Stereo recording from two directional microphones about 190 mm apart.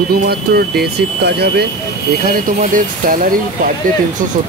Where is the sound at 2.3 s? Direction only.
45° right (ahead or behind).